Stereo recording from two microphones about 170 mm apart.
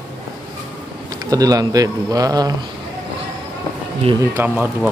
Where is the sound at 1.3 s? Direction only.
20° right (ahead or behind).